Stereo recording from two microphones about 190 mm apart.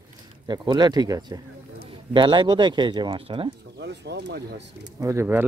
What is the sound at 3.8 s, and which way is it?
Speech, 65° right (ahead or behind).